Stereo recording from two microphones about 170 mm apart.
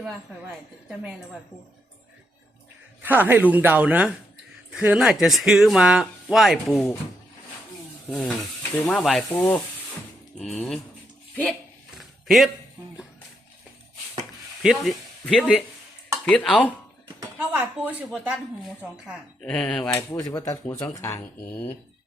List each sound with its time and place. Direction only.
0.0 s speech: 5° right (ahead or behind)
3.0 s speech: 10° right (ahead or behind)
8.0 s stir: 5° left (ahead or behind)
8.9 s speech: 5° left (ahead or behind)
11.9 s a sound: centre (ahead or behind)
14.6 s speech: centre (ahead or behind)
17.2 s speech: 10° right (ahead or behind)
19.4 s speech: 5° left (ahead or behind)
19.9 s speech: 20° left (ahead or behind)